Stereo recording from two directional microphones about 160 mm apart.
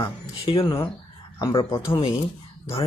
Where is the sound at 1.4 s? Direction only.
20° left (ahead or behind).